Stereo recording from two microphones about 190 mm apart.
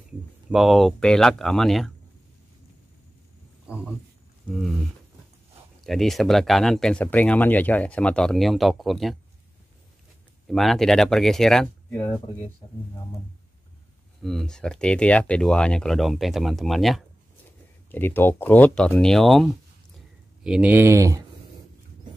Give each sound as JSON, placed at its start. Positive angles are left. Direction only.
{"t": 0.5, "sound": "speech", "side_deg": 0}
{"t": 4.5, "sound": "speech", "side_deg": 0}
{"t": 5.9, "sound": "speech", "side_deg": 0}
{"t": 10.5, "sound": "speech", "side_deg": 0}
{"t": 12.6, "sound": "speech", "side_deg": 30}
{"t": 14.2, "sound": "speech", "side_deg": 5}
{"t": 17.9, "sound": "speech", "side_deg": 10}